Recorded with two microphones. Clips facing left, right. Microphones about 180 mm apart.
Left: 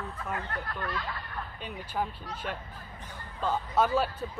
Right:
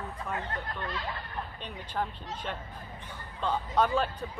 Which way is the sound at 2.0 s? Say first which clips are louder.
Even; 5° left (ahead or behind).